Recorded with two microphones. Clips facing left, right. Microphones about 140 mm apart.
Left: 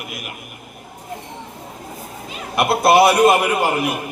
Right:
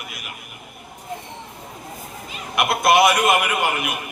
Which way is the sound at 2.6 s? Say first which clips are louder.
Left 3 dB; 30° left (ahead or behind).